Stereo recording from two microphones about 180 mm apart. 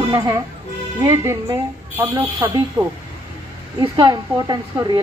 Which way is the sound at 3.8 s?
25° right (ahead or behind).